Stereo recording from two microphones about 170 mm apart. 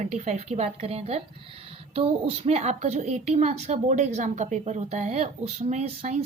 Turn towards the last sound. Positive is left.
turn(degrees=-45)  # may be behind; listen again after turning